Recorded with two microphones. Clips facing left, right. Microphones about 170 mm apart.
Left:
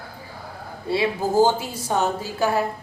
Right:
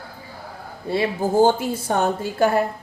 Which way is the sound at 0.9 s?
50° right (ahead or behind).